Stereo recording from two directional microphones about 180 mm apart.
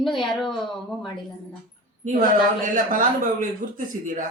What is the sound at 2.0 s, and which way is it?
Speech, 45° right (ahead or behind).